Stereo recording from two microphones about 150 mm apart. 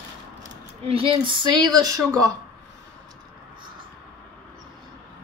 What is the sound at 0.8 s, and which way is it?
Speech, 35° right (ahead or behind).